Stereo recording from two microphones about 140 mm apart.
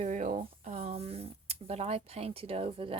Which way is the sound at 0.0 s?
60° right (ahead or behind).